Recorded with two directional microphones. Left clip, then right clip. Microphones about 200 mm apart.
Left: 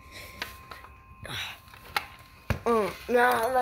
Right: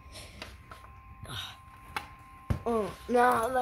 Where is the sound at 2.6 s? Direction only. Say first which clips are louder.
Left 5 dB; 5° left (ahead or behind).